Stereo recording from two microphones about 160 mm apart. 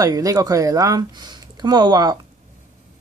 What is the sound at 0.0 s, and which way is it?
Speech, 20° right (ahead or behind).